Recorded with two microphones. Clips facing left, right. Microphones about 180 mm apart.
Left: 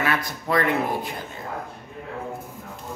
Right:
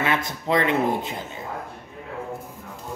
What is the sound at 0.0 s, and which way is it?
Speech, 20° right (ahead or behind).